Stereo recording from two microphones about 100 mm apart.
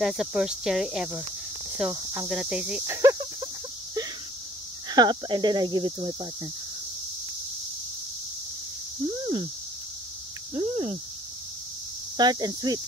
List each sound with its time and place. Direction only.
0.0 s speech: 5° right (ahead or behind)
2.2 s speech: 5° right (ahead or behind)
2.9 s cricket: 30° right (ahead or behind)
4.8 s speech: 45° right (ahead or behind)
9.2 s a sound: 55° right (ahead or behind)
10.5 s a sound: 70° right (ahead or behind)
12.2 s speech: 45° right (ahead or behind)